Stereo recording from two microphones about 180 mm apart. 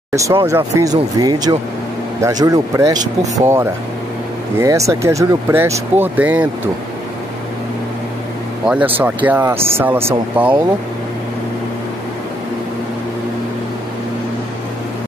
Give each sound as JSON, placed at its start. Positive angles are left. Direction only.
{"t": 0.1, "sound": "speech", "side_deg": -15}
{"t": 8.6, "sound": "speech", "side_deg": -10}